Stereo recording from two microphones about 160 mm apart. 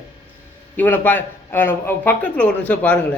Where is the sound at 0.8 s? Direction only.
10° left (ahead or behind).